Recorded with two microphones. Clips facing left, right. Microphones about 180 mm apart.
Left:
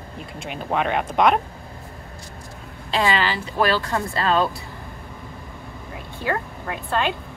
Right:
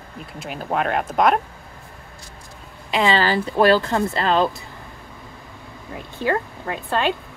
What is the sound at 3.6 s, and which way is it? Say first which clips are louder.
Speech: right 5 dB; 30° right (ahead or behind).